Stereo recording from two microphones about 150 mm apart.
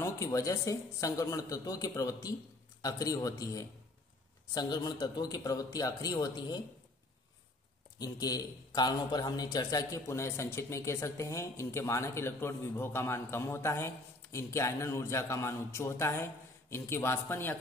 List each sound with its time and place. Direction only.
0.0 s a man's voice: 20° left (ahead or behind)
8.0 s a man's voice: 25° left (ahead or behind)